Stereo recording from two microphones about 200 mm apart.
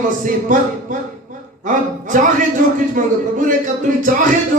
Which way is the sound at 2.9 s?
40° right (ahead or behind).